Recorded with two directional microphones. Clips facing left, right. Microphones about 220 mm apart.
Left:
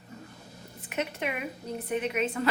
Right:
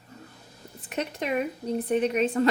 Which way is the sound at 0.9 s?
35° right (ahead or behind).